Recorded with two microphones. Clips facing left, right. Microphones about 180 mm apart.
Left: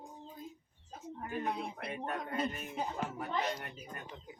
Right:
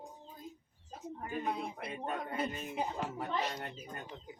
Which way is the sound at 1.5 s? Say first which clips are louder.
Right 2 dB; centre (ahead or behind).